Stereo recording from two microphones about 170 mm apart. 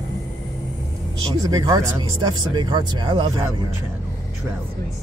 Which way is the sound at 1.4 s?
20° right (ahead or behind).